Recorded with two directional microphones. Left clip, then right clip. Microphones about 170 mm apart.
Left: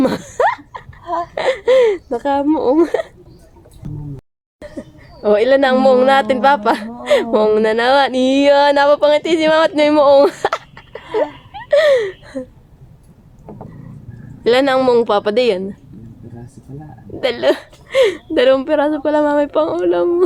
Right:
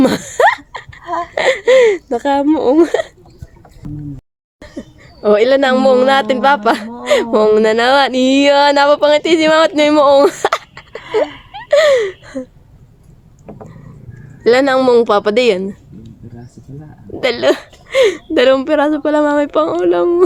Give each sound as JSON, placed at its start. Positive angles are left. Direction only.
{"t": 0.0, "sound": "laughter", "side_deg": -45}
{"t": 1.2, "sound": "a sound", "side_deg": -40}
{"t": 3.8, "sound": "a sound", "side_deg": 0}
{"t": 4.6, "sound": "speech", "side_deg": -20}
{"t": 14.4, "sound": "speech", "side_deg": -25}
{"t": 17.2, "sound": "speech", "side_deg": -30}